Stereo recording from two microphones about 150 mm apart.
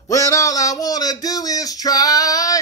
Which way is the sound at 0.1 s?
20° left (ahead or behind).